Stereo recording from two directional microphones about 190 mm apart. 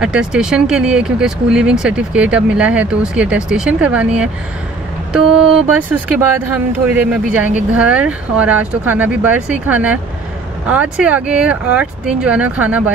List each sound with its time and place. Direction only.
0.0 s speech: 5° right (ahead or behind)